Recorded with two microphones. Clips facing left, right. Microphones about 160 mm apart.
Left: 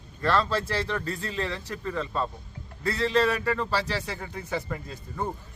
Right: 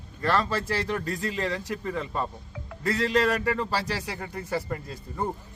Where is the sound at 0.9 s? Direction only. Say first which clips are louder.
Right 2 dB; 10° right (ahead or behind).